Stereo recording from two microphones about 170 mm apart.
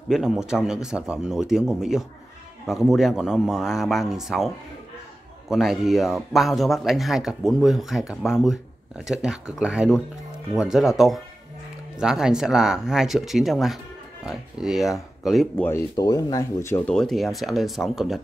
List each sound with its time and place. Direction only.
0.1 s speech: 5° right (ahead or behind)
5.5 s speech: centre (ahead or behind)
15.6 s speech: 20° left (ahead or behind)
16.9 s speech: centre (ahead or behind)